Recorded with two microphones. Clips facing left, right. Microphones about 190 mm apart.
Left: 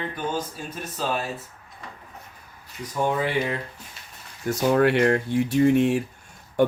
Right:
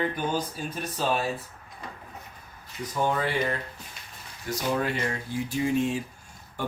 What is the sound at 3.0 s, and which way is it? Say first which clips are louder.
Speech: left 3 dB; 10° left (ahead or behind).